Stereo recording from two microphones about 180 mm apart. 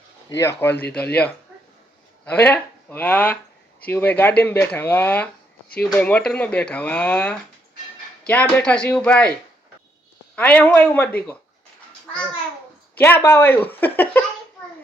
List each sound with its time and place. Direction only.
0.3 s speech: 15° left (ahead or behind)
10.3 s speech: 10° left (ahead or behind)
13.0 s speech: 10° left (ahead or behind)